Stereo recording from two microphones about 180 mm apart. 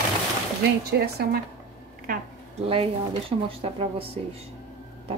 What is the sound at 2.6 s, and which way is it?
Speech, 30° right (ahead or behind).